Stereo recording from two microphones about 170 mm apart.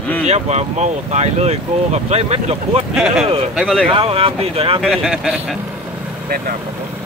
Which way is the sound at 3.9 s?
30° right (ahead or behind).